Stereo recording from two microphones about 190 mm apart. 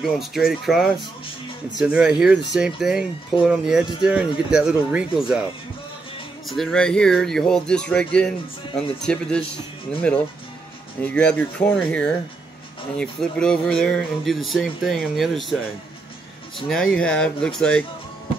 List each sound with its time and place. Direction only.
0.0 s speech: centre (ahead or behind)
6.5 s speech: 5° left (ahead or behind)
12.9 s speech: 5° left (ahead or behind)
16.6 s speech: centre (ahead or behind)